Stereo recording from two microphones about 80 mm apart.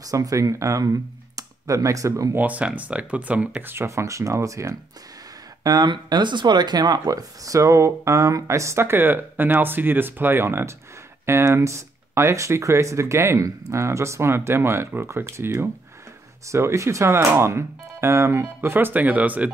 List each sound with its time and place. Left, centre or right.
0.0 s speech: right
2.3 s speech: centre
3.7 s speech: right
5.6 s speech: right
5.9 s speech: right; by 19.5 s centre